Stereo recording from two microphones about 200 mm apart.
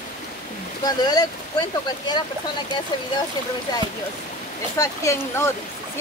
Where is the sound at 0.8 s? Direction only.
20° left (ahead or behind).